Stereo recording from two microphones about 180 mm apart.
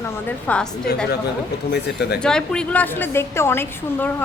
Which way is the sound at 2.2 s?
5° left (ahead or behind).